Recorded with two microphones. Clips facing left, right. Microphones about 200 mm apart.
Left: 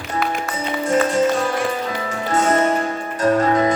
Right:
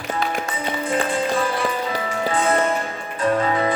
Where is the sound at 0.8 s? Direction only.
45° left (ahead or behind).